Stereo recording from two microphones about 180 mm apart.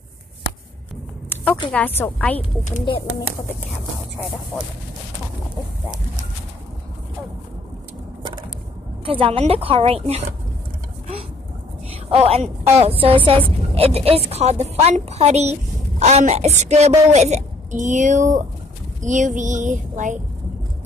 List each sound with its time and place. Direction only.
1.3 s a sound: 15° left (ahead or behind)
1.7 s speech: 10° left (ahead or behind)
2.8 s speech: 25° left (ahead or behind)
9.0 s a woman's voice: 30° right (ahead or behind)
12.1 s a woman's voice: 35° right (ahead or behind)
19.0 s a sound: 45° right (ahead or behind)